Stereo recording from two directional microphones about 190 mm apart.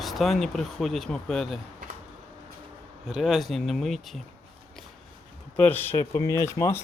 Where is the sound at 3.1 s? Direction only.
Centre (ahead or behind).